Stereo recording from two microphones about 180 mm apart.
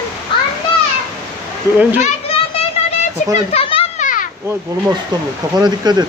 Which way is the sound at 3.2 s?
40° left (ahead or behind).